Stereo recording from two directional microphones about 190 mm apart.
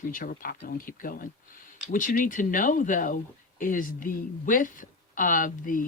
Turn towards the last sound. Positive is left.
turn(degrees=45)  # may be behind; listen again after turning